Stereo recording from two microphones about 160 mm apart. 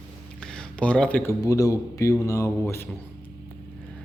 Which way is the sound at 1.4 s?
20° left (ahead or behind).